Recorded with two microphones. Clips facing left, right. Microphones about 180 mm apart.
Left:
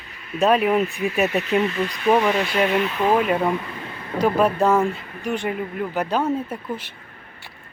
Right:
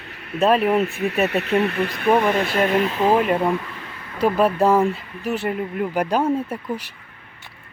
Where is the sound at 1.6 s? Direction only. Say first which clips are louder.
Right 1 dB; 60° right (ahead or behind); by 2.9 s 45° right (ahead or behind).